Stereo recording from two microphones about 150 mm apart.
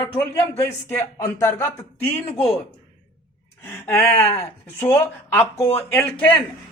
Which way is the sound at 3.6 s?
15° left (ahead or behind).